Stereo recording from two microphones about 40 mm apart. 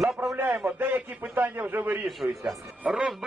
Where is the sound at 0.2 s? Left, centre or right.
Right.